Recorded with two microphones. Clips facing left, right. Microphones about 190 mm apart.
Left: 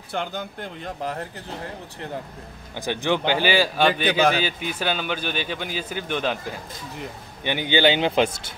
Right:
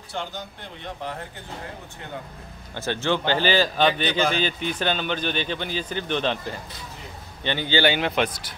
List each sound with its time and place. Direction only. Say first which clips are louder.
0.1 s speech: left 4 dB; 55° left (ahead or behind)
2.7 s speech: left 1 dB; 15° left (ahead or behind)
7.4 s speech: left 2 dB; 15° left (ahead or behind)